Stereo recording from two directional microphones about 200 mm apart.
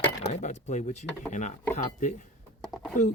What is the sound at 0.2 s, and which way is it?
Speech, 35° left (ahead or behind).